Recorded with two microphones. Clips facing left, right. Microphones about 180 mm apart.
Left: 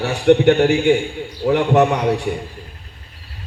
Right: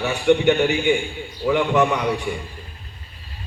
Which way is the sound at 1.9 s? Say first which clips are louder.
Left 4 dB; 60° left (ahead or behind).